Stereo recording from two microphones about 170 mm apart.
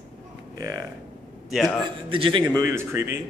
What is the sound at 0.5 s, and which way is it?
Speech, 20° right (ahead or behind).